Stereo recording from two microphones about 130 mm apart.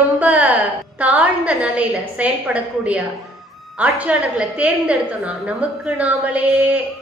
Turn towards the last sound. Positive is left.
turn(degrees=-5)  # may be behind; listen again after turning